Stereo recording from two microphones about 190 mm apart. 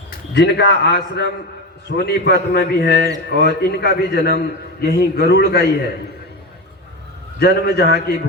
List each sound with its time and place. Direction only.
0.1 s a man's voice: 65° left (ahead or behind)
7.3 s a man's voice: 55° left (ahead or behind)